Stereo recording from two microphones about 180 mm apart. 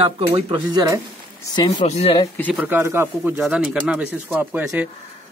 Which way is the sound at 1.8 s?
35° left (ahead or behind).